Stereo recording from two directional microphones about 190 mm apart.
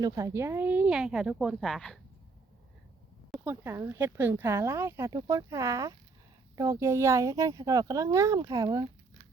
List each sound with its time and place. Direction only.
0.0 s speech: 15° right (ahead or behind); by 2.0 s centre (ahead or behind)
3.4 s speech: 10° right (ahead or behind)